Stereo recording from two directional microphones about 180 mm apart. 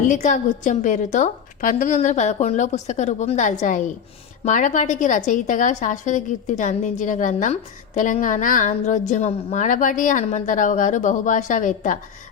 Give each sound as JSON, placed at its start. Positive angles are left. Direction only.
{"t": 0.1, "sound": "a woman's voice", "side_deg": 45}